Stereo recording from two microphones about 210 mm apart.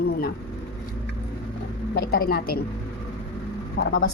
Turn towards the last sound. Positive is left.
turn(degrees=55)  # may be behind; listen again after turning